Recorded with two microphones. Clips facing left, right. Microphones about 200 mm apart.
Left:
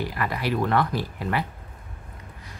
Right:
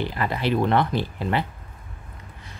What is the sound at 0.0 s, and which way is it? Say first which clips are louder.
Speech: right 2 dB; 25° right (ahead or behind).